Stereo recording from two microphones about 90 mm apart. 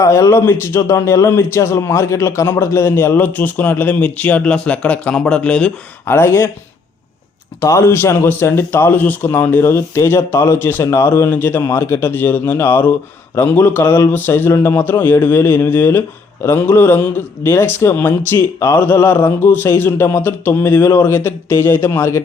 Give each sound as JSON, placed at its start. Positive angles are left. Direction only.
{"t": 0.0, "sound": "speech", "side_deg": 35}
{"t": 6.1, "sound": "speech", "side_deg": 25}
{"t": 7.6, "sound": "speech", "side_deg": 35}